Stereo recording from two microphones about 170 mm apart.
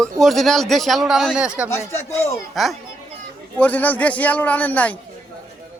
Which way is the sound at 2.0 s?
15° left (ahead or behind).